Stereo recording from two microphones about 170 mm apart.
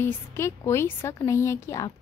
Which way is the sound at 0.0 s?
15° left (ahead or behind).